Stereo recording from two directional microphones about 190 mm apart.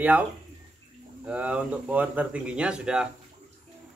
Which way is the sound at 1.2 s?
5° right (ahead or behind).